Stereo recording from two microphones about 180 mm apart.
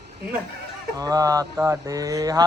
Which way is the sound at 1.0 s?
20° right (ahead or behind).